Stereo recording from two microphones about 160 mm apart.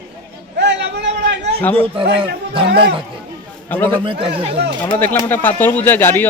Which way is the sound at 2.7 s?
80° right.